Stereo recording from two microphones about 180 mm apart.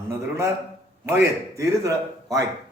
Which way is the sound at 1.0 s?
15° right (ahead or behind).